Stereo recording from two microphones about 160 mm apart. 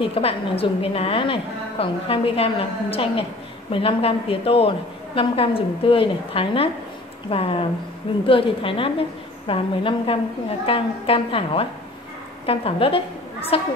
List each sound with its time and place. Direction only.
0.0 s a woman's voice: 35° left (ahead or behind)